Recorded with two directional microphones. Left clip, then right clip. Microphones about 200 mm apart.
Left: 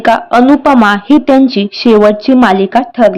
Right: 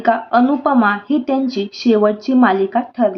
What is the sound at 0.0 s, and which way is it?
Speech, 40° left (ahead or behind).